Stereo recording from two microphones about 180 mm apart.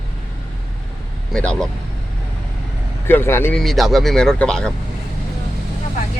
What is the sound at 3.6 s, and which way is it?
Speech, centre (ahead or behind).